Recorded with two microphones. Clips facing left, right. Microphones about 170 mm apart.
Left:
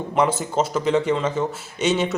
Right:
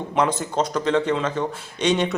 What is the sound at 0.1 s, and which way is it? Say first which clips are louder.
Speech: left 1 dB; 5° left (ahead or behind).